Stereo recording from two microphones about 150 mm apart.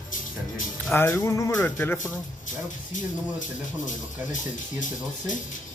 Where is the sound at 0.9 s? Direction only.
15° left (ahead or behind).